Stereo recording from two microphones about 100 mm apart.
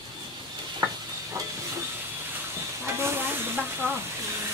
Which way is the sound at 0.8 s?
35° right (ahead or behind).